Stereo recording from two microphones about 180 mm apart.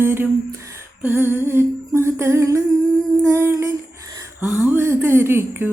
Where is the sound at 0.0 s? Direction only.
10° right (ahead or behind).